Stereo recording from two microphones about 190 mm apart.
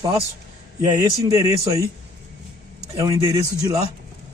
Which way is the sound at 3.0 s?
15° right (ahead or behind).